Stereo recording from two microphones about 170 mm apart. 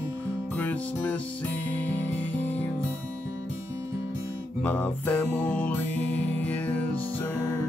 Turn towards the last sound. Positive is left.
turn(degrees=10)  # may be behind; listen again after turning